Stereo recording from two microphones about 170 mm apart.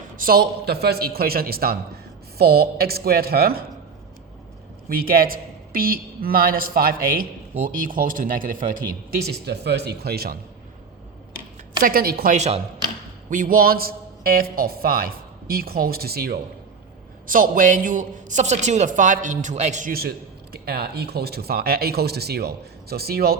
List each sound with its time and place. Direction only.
0.2 s a man's voice: 65° right (ahead or behind)
4.9 s a man's voice: 60° right (ahead or behind)
11.8 s a man's voice: 60° right (ahead or behind)
17.2 s a woman's voice: 55° right (ahead or behind)
19.9 s a man's voice: 65° right (ahead or behind)